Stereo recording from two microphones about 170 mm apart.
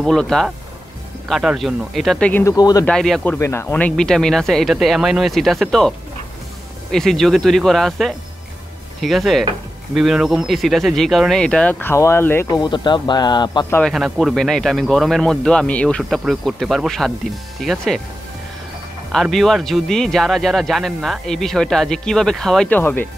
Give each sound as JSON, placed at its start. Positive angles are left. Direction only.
{"t": 0.0, "sound": "speech", "side_deg": 0}
{"t": 2.4, "sound": "speech", "side_deg": 20}
{"t": 2.8, "sound": "speech", "side_deg": 5}
{"t": 3.3, "sound": "speech", "side_deg": 15}
{"t": 12.4, "sound": "speech", "side_deg": 25}
{"t": 13.7, "sound": "speech", "side_deg": 10}
{"t": 13.9, "sound": "speech", "side_deg": 0}
{"t": 19.3, "sound": "speech", "side_deg": 0}